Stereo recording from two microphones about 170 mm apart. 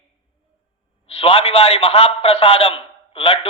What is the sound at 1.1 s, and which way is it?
A man's voice, 35° left (ahead or behind).